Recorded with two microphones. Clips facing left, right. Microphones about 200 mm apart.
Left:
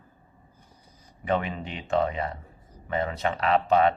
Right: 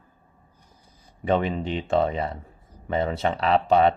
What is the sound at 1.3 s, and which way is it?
Speech, 30° right (ahead or behind).